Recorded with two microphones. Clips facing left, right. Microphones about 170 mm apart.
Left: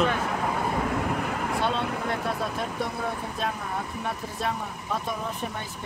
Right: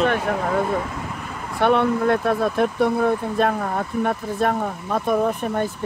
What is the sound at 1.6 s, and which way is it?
Speech, 65° right (ahead or behind).